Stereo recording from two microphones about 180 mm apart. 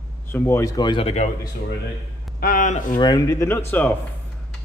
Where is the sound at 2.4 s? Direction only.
50° left (ahead or behind).